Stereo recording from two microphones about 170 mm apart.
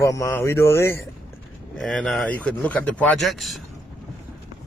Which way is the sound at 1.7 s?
5° left (ahead or behind).